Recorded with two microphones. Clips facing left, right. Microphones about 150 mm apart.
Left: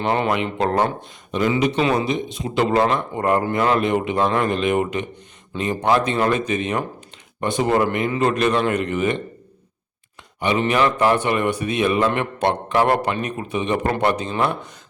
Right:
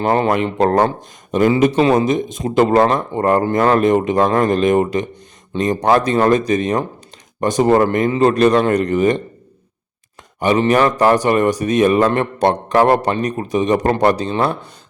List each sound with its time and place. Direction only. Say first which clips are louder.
0.0 s a man's voice: right 5 dB; 40° right (ahead or behind)
10.4 s a man's voice: right 5 dB; 40° right (ahead or behind)